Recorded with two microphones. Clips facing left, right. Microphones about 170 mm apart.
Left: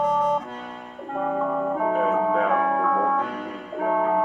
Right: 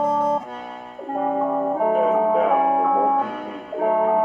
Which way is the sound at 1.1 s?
35° right (ahead or behind).